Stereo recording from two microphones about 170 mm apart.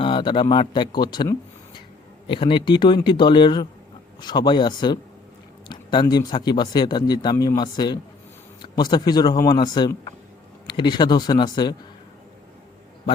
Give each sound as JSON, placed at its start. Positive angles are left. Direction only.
{"t": 0.0, "sound": "speech", "side_deg": 30}